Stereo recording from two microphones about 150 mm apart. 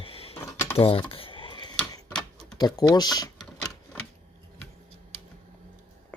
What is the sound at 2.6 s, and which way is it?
Speech, 25° left (ahead or behind).